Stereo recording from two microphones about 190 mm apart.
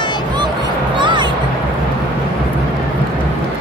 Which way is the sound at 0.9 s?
25° right (ahead or behind).